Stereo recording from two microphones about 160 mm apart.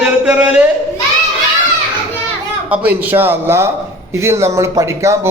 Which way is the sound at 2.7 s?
10° right (ahead or behind).